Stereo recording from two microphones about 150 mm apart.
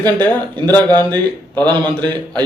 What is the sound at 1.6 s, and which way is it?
Speech, 30° right (ahead or behind).